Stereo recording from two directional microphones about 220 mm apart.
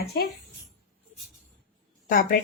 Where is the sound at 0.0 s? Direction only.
45° left (ahead or behind).